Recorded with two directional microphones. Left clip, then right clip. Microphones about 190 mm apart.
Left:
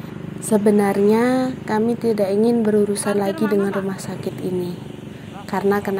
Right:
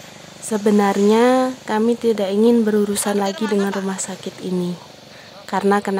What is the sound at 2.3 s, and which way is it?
Speech, 40° right (ahead or behind).